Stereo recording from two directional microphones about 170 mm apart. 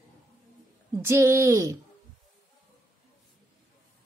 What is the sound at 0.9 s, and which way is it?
Speech, 15° right (ahead or behind).